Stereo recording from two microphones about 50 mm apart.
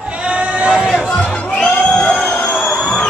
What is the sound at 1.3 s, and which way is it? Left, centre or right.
Music, left.